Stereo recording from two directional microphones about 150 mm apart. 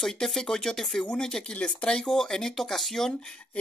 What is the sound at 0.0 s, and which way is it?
Speech, 5° left (ahead or behind).